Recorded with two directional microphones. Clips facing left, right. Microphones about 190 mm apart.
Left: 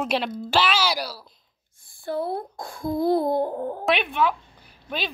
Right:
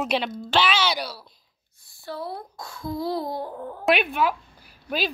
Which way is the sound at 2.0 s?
50° left (ahead or behind).